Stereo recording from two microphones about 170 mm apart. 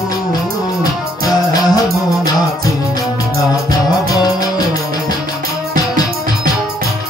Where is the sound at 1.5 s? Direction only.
20° left (ahead or behind).